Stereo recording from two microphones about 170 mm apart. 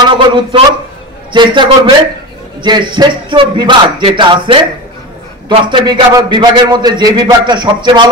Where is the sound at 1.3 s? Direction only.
25° right (ahead or behind).